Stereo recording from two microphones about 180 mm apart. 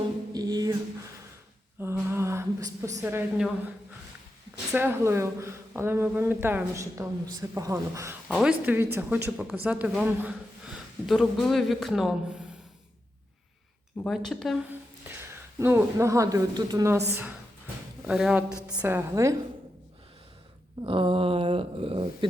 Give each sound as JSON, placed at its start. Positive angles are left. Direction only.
{"t": 0.3, "sound": "music", "side_deg": -20}
{"t": 1.8, "sound": "a sound", "side_deg": -10}
{"t": 4.7, "sound": "speech", "side_deg": -10}
{"t": 14.0, "sound": "speech", "side_deg": 0}
{"t": 14.7, "sound": "a woman's voice", "side_deg": -10}
{"t": 20.8, "sound": "speech", "side_deg": -30}